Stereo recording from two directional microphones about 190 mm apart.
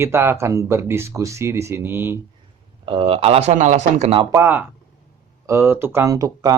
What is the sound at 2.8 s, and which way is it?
Speech, 30° right (ahead or behind).